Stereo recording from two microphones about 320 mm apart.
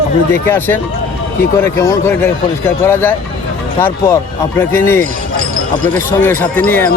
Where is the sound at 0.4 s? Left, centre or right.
Centre.